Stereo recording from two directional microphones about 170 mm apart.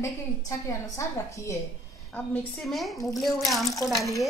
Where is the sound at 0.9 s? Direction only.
15° left (ahead or behind).